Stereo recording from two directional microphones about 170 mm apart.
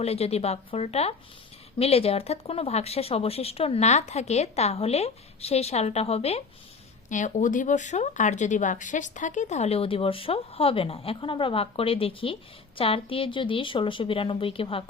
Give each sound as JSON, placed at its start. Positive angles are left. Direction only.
{"t": 0.0, "sound": "speech", "side_deg": 35}
{"t": 7.1, "sound": "speech", "side_deg": 45}